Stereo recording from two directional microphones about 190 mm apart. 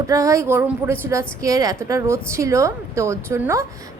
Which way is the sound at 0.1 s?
15° right (ahead or behind).